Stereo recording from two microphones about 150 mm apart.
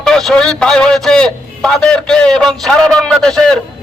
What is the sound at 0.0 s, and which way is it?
Speech, 5° left (ahead or behind).